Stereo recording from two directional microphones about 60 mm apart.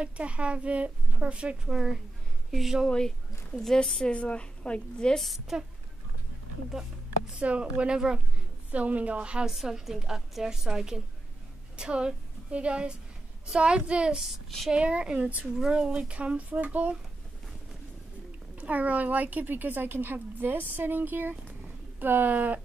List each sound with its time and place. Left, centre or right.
0.0 s a woman's voice: centre
4.0 s a woman's voice: centre
5.2 s a woman's voice: centre
7.3 s a woman's voice: centre
8.7 s a woman's voice: right
15.6 s a woman's voice: centre; by 16.9 s right
18.6 s speech: right